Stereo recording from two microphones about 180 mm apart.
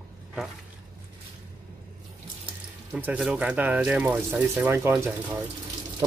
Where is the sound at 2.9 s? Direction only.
5° right (ahead or behind).